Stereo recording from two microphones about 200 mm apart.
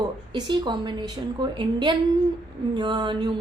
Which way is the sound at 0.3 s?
25° right (ahead or behind).